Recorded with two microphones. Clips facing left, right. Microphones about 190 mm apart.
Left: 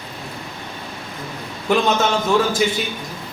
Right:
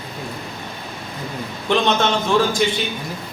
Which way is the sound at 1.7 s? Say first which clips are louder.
Left 1 dB; 5° left (ahead or behind).